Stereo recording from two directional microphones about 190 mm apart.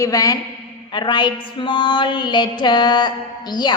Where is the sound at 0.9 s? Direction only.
25° left (ahead or behind).